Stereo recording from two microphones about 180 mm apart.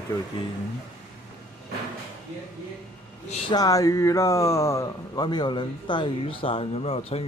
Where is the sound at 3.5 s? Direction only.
20° left (ahead or behind).